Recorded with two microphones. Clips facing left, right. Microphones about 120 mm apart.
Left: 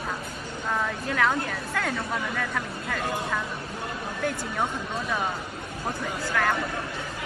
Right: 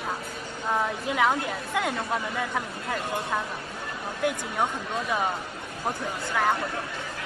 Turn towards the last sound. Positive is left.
turn(degrees=-15)  # may be behind; listen again after turning